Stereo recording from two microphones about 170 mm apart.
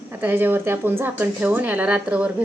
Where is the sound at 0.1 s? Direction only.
10° right (ahead or behind).